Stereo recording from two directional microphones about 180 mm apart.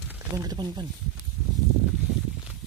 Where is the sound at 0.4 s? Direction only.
20° right (ahead or behind).